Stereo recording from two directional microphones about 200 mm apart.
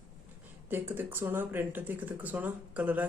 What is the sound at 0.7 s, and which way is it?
Speech, 10° right (ahead or behind).